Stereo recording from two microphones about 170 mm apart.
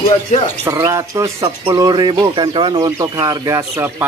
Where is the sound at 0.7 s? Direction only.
20° right (ahead or behind).